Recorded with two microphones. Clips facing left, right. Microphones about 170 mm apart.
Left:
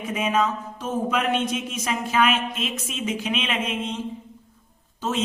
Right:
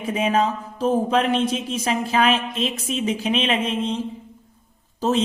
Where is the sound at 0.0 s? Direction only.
30° right (ahead or behind).